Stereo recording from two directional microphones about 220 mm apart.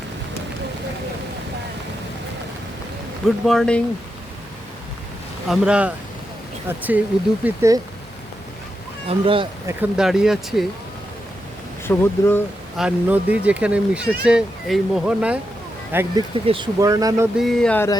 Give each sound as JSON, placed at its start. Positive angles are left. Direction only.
{"t": 3.2, "sound": "speech", "side_deg": 0}
{"t": 5.5, "sound": "speech", "side_deg": -5}
{"t": 9.0, "sound": "speech", "side_deg": -25}
{"t": 9.6, "sound": "speech", "side_deg": -5}
{"t": 11.9, "sound": "speech", "side_deg": 10}
{"t": 12.7, "sound": "speech", "side_deg": -5}
{"t": 17.3, "sound": "speech", "side_deg": 0}